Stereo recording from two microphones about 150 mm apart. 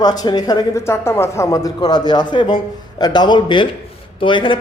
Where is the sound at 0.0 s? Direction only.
25° left (ahead or behind).